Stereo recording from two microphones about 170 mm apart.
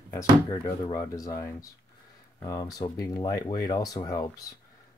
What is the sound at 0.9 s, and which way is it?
Speech, 20° left (ahead or behind).